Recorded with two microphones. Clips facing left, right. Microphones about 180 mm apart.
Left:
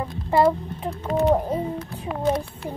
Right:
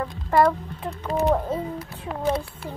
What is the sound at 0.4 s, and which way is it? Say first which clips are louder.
A child's voice: even; 15° left (ahead or behind).